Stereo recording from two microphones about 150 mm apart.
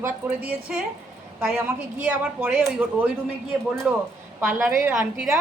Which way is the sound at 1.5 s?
10° right (ahead or behind).